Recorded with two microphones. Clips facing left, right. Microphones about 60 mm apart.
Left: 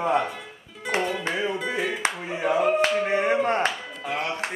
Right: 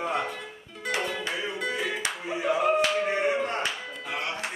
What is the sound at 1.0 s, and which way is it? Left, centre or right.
Music, centre.